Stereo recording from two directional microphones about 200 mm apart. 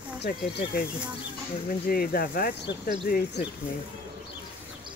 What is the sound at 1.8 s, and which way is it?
Speech, 50° left (ahead or behind).